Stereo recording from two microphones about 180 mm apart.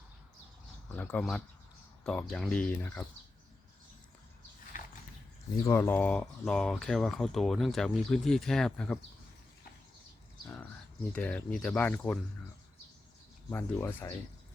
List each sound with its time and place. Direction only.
0.9 s speech: 5° left (ahead or behind)
4.7 s a sound: 45° left (ahead or behind)
5.6 s speech: 10° left (ahead or behind)
11.1 s speech: 5° left (ahead or behind)
13.5 s speech: 15° left (ahead or behind)